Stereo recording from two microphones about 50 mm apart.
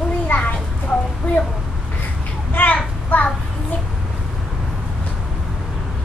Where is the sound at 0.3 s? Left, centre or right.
Left.